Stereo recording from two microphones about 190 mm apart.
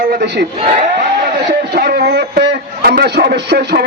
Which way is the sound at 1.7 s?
60° right (ahead or behind).